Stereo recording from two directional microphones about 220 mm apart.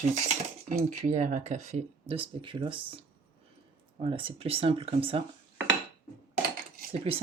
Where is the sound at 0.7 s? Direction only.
35° right (ahead or behind).